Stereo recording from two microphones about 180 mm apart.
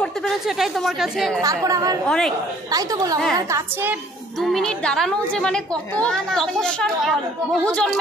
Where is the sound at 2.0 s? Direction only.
Centre (ahead or behind).